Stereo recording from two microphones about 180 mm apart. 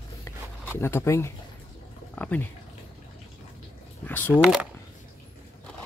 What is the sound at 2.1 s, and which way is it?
Speech, 10° left (ahead or behind).